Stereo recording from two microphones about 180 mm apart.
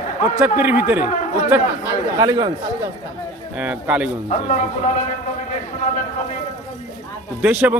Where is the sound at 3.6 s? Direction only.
5° right (ahead or behind).